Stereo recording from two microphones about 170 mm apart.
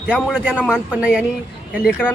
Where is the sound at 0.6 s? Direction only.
5° left (ahead or behind).